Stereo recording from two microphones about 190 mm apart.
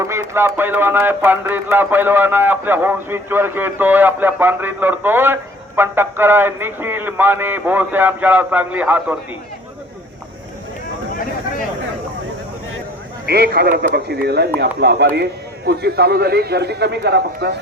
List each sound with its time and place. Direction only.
0.0 s speech: 15° right (ahead or behind)
13.2 s a man's voice: 55° right (ahead or behind)